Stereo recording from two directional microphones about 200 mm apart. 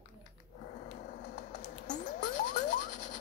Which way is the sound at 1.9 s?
40° left (ahead or behind).